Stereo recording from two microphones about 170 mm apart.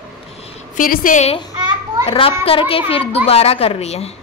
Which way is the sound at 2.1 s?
35° left (ahead or behind).